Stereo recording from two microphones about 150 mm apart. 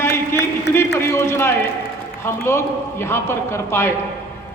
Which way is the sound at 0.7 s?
15° left (ahead or behind).